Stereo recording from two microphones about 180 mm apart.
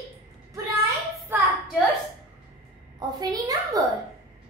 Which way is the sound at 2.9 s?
20° right (ahead or behind).